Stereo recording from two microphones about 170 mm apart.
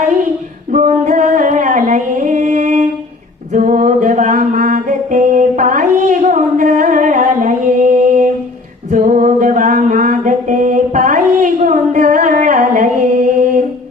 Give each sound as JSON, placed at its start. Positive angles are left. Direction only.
{"t": 0.7, "sound": "singing", "side_deg": -45}
{"t": 3.5, "sound": "music", "side_deg": -50}
{"t": 8.9, "sound": "a sound", "side_deg": -50}